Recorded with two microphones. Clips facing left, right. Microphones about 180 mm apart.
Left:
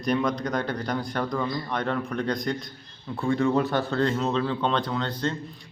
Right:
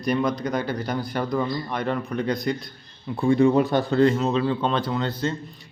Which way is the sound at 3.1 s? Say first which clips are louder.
Right 5 dB; 15° right (ahead or behind).